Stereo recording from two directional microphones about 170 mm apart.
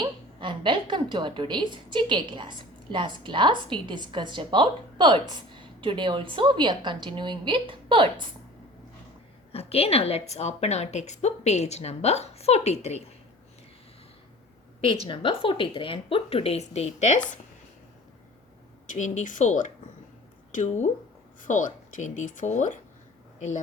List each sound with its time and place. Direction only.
0.0 s a woman's voice: 30° right (ahead or behind)
9.5 s a woman's voice: 35° left (ahead or behind)
15.0 s a woman's voice: 30° left (ahead or behind)
18.9 s speech: 45° left (ahead or behind)